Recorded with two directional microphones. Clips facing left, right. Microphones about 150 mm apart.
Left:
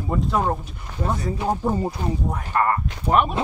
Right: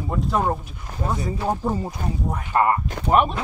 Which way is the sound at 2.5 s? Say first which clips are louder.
Right 2 dB; 20° right (ahead or behind).